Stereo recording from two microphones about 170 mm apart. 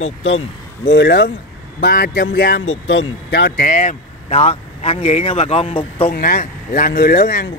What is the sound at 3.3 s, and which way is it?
Speech, 90° left.